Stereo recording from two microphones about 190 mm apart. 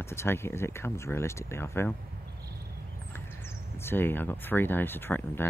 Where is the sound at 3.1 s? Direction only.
10° left (ahead or behind).